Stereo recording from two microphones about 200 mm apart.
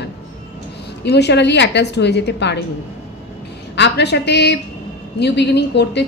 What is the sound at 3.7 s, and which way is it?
A woman's voice, 60° left (ahead or behind).